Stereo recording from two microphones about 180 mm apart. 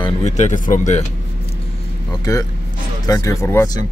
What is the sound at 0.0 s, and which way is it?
Speech, 40° left (ahead or behind).